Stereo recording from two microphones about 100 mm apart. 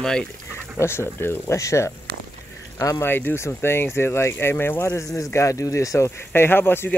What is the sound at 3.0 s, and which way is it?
Speech, 20° left (ahead or behind).